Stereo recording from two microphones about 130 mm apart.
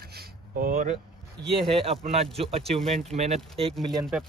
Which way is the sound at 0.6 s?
85° right.